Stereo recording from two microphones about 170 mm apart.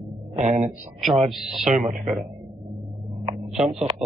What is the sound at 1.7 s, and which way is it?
Speech, 40° right (ahead or behind).